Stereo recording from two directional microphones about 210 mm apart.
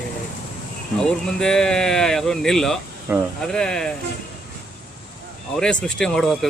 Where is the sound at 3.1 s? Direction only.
10° right (ahead or behind).